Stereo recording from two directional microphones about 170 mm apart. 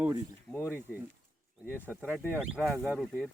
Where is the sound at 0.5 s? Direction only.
10° left (ahead or behind).